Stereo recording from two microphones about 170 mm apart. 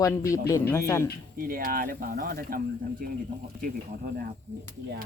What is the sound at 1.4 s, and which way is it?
Speech, 60° right (ahead or behind).